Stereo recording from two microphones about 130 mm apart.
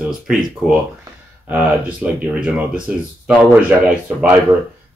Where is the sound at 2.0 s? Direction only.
10° right (ahead or behind).